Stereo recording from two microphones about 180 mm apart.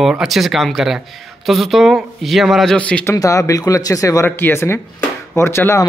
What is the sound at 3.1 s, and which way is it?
Speech, 20° left (ahead or behind).